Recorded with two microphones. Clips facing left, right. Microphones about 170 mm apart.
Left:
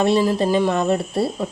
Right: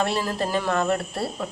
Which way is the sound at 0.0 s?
20° left (ahead or behind).